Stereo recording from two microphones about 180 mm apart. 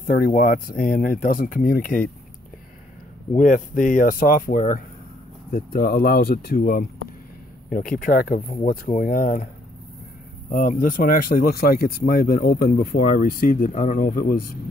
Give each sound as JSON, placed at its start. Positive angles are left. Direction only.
{"t": 0.0, "sound": "speech", "side_deg": 50}
{"t": 3.3, "sound": "speech", "side_deg": 45}
{"t": 10.5, "sound": "speech", "side_deg": 50}